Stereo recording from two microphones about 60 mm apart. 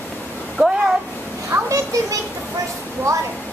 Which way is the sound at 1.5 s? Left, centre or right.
Right.